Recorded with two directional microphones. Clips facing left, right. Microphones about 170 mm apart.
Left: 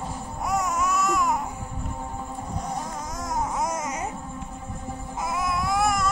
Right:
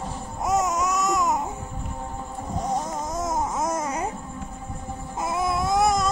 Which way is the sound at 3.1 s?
25° right (ahead or behind).